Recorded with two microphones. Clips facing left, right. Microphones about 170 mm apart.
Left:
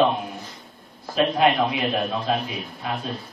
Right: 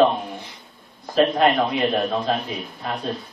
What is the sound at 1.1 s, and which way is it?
Speech, 5° left (ahead or behind).